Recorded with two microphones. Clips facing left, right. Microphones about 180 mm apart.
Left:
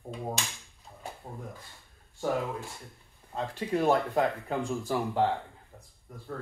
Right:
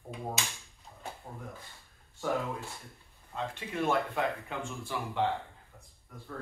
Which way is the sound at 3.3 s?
35° left (ahead or behind).